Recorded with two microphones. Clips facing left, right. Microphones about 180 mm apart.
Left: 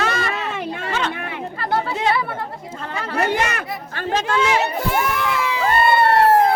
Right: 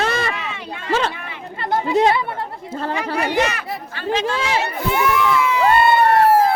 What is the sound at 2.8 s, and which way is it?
Speech, 35° right (ahead or behind).